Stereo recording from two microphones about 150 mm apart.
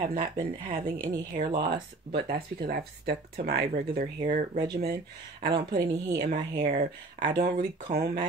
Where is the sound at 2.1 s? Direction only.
80° right.